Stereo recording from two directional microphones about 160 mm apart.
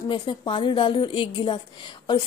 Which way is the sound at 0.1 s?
30° left (ahead or behind).